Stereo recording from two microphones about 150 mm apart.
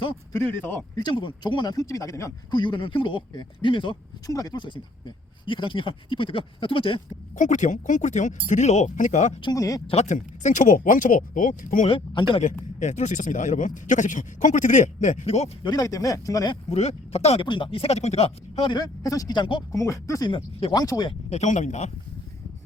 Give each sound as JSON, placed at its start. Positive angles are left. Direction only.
{"t": 0.3, "sound": "speech", "side_deg": 15}
{"t": 0.9, "sound": "speech", "side_deg": 30}
{"t": 7.3, "sound": "speech", "side_deg": 55}
{"t": 9.4, "sound": "speech", "side_deg": 25}
{"t": 9.8, "sound": "speech", "side_deg": 45}
{"t": 11.9, "sound": "speech", "side_deg": 35}
{"t": 12.8, "sound": "speech", "side_deg": 50}
{"t": 15.6, "sound": "speech", "side_deg": 25}
{"t": 16.6, "sound": "speech", "side_deg": 45}
{"t": 18.7, "sound": "speech", "side_deg": 25}
{"t": 19.7, "sound": "speech", "side_deg": 20}
{"t": 20.3, "sound": "speech", "side_deg": 35}
{"t": 20.8, "sound": "speech", "side_deg": 25}
{"t": 21.1, "sound": "speech", "side_deg": 45}